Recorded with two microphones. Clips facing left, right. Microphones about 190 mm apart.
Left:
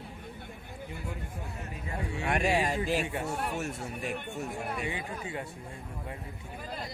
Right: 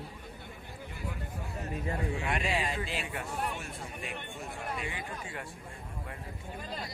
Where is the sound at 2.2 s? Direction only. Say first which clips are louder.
Left 8 dB; 45° left (ahead or behind).